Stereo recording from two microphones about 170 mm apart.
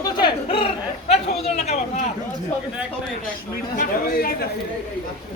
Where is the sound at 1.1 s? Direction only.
40° left (ahead or behind).